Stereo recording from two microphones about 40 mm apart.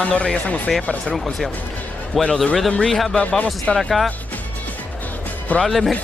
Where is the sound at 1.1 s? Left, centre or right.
Centre.